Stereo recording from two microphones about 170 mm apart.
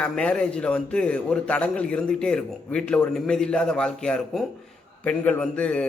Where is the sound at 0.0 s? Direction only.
5° left (ahead or behind).